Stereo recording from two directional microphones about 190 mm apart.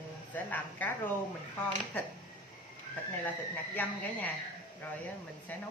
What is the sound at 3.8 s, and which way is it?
Speech, 10° left (ahead or behind).